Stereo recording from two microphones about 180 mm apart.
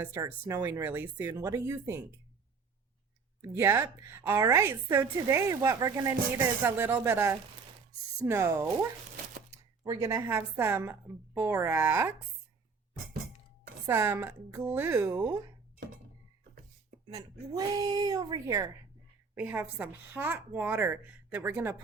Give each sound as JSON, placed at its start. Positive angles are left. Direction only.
{"t": 0.0, "sound": "a woman's voice", "side_deg": -15}
{"t": 3.4, "sound": "a woman's voice", "side_deg": -15}
{"t": 9.8, "sound": "a woman's voice", "side_deg": -15}
{"t": 13.8, "sound": "a woman's voice", "side_deg": -15}
{"t": 17.2, "sound": "a woman's voice", "side_deg": -20}